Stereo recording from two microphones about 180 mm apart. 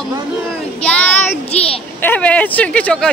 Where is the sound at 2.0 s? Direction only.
10° left (ahead or behind).